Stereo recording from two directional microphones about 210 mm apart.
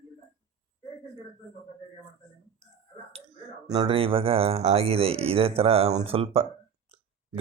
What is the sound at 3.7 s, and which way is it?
Speech, 25° right (ahead or behind).